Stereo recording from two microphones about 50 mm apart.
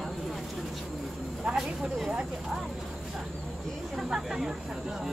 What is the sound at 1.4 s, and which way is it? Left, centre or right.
Speech, centre.